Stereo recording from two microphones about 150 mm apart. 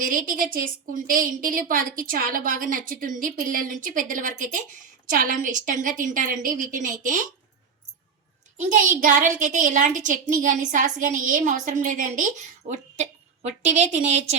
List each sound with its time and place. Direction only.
0.0 s a woman's voice: 65° right (ahead or behind)
8.5 s a woman's voice: 60° right (ahead or behind)